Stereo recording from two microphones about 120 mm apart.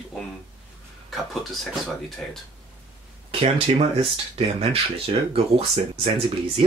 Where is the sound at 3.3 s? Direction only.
55° right (ahead or behind).